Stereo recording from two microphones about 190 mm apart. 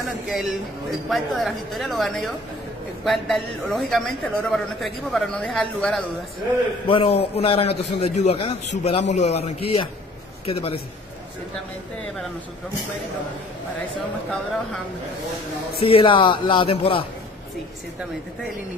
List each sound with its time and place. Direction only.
0.3 s a woman's voice: centre (ahead or behind)
6.9 s a man's voice: 30° left (ahead or behind)
15.8 s speech: 25° left (ahead or behind)